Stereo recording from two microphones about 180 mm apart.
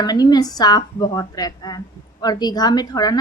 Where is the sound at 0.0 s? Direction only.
20° left (ahead or behind).